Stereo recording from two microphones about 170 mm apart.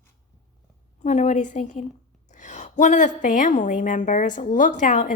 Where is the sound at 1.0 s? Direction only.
45° left (ahead or behind).